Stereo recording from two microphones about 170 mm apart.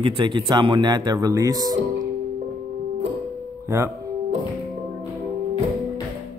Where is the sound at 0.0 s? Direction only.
30° right (ahead or behind).